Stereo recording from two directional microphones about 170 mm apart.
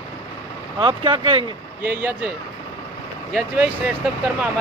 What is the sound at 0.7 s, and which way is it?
Speech, 30° right (ahead or behind).